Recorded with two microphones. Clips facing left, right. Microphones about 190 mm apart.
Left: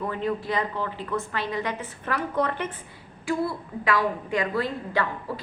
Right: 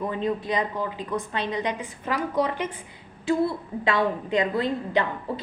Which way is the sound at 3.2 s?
25° right (ahead or behind).